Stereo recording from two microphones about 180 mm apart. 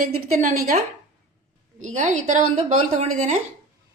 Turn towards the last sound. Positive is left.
turn(degrees=-40)  # may be behind; listen again after turning